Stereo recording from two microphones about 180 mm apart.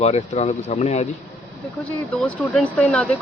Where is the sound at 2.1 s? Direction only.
5° left (ahead or behind).